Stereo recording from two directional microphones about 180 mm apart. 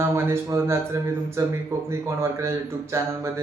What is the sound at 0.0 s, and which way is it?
Speech, 15° right (ahead or behind).